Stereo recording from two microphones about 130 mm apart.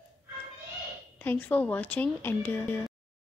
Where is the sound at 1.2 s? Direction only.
15° left (ahead or behind).